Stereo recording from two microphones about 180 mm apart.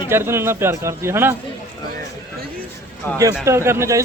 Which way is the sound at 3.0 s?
10° left (ahead or behind).